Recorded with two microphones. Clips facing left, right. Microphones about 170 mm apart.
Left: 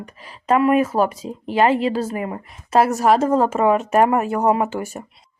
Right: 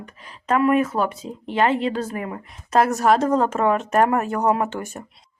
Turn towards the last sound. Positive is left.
turn(degrees=10)  # may be behind; listen again after turning